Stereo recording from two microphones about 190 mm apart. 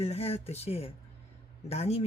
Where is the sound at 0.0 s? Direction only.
35° left (ahead or behind).